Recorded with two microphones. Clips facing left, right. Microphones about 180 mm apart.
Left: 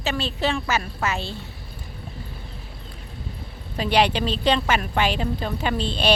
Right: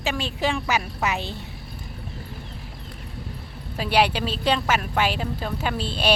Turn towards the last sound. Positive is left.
turn(degrees=-10)  # may be behind; listen again after turning